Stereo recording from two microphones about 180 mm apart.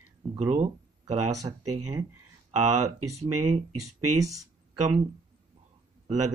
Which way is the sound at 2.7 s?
40° right (ahead or behind).